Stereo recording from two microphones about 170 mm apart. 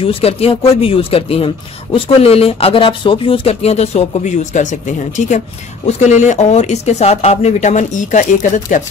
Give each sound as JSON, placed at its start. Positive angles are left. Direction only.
{"t": 0.0, "sound": "speech", "side_deg": 35}